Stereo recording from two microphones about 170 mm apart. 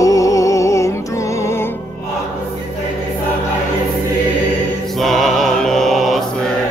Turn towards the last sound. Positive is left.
turn(degrees=0)  # may be behind; listen again after turning